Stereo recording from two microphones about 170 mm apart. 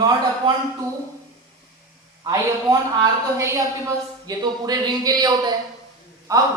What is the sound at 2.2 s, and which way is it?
A woman's voice, 25° right (ahead or behind).